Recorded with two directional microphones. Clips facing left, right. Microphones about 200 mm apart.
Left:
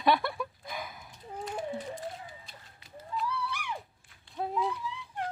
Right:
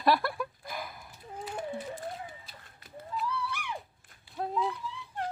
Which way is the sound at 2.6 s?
55° right (ahead or behind).